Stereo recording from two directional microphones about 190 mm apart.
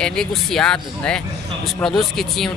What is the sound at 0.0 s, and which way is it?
Speech, centre (ahead or behind).